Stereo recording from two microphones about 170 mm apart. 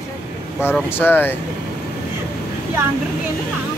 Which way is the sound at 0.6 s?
10° left (ahead or behind).